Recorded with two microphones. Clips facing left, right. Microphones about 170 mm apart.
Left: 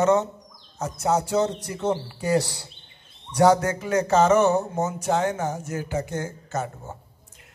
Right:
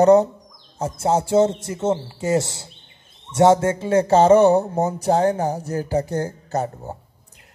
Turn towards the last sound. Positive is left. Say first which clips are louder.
# right 5 dB
turn(degrees=-35)  # may be behind; listen again after turning